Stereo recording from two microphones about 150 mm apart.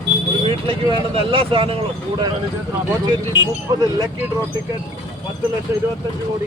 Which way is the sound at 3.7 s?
30° right (ahead or behind).